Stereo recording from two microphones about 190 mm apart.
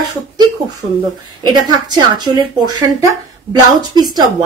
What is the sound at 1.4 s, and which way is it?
Speech, 20° right (ahead or behind).